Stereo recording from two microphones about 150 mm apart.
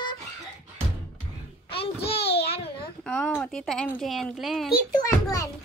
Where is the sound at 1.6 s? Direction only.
40° left (ahead or behind).